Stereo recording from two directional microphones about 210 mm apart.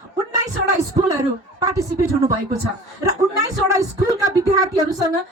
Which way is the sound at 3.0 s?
15° right (ahead or behind).